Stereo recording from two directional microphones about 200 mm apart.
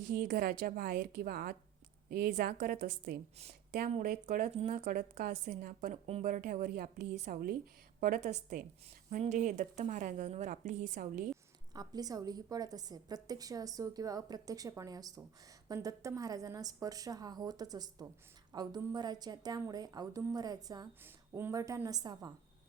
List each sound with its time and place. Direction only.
0.0 s a woman's voice: 45° right (ahead or behind)
11.7 s a woman's voice: 20° right (ahead or behind)